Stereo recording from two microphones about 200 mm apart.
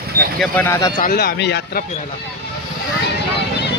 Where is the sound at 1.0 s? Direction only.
50° left (ahead or behind).